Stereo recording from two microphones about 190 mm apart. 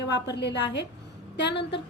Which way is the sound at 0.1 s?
65° left (ahead or behind).